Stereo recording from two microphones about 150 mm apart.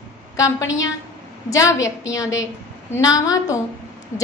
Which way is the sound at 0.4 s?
20° left (ahead or behind).